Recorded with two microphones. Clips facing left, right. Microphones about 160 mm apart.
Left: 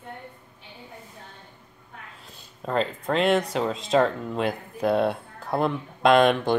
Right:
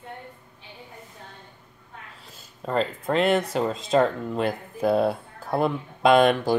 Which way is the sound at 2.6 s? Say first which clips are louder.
Even; centre (ahead or behind).